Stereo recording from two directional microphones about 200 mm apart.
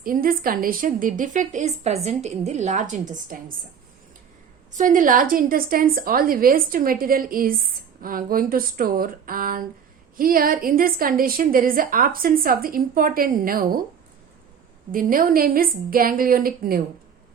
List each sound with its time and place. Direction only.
0.0 s a woman's voice: 45° right (ahead or behind)
4.7 s a woman's voice: 40° right (ahead or behind)
14.9 s a woman's voice: 45° right (ahead or behind)